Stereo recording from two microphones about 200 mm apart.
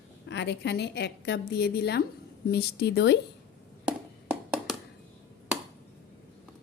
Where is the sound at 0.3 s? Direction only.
60° left (ahead or behind).